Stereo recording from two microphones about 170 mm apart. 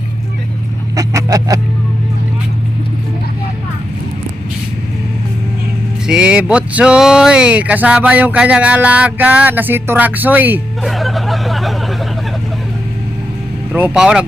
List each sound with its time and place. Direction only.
0.9 s vehicle: 20° right (ahead or behind)
6.1 s speech: 5° right (ahead or behind)
10.8 s vehicle: centre (ahead or behind)
13.7 s speech: 5° right (ahead or behind)